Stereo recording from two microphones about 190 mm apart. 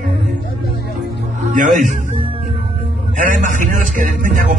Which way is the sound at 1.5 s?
40° right (ahead or behind).